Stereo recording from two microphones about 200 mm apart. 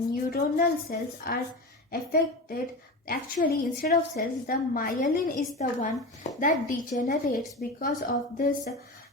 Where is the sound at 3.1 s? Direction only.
45° left (ahead or behind).